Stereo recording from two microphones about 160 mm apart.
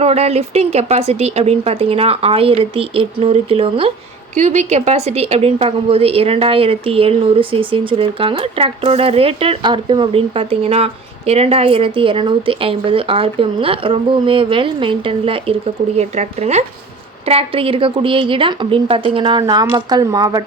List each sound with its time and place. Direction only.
0.0 s a woman's voice: 40° right (ahead or behind); by 20.4 s 25° right (ahead or behind)